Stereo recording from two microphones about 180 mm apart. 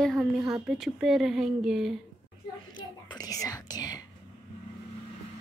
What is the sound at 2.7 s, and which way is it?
Whispering, 25° left (ahead or behind).